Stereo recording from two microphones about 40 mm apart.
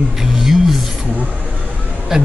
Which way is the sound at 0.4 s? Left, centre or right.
Centre.